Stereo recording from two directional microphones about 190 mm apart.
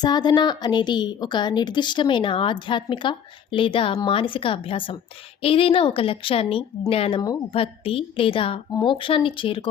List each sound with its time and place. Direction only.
0.0 s a woman's voice: 20° left (ahead or behind)